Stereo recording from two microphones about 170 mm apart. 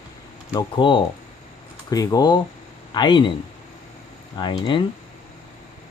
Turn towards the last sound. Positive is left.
turn(degrees=30)  # may be behind; listen again after turning